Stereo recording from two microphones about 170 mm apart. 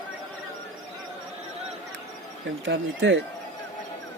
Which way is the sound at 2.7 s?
90° right.